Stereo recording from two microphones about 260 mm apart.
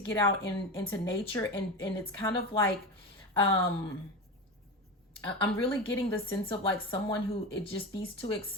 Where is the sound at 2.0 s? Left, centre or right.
Centre.